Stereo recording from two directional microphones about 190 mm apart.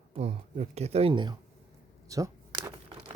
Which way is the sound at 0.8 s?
35° right (ahead or behind).